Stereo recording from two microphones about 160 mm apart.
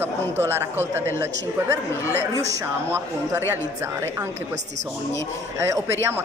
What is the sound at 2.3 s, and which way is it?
A woman's voice, 20° right (ahead or behind).